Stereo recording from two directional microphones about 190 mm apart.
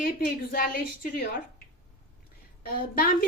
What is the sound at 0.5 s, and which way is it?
Speech, 50° left (ahead or behind).